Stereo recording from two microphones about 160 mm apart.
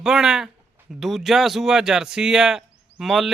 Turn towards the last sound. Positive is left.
turn(degrees=0)  # may be behind; listen again after turning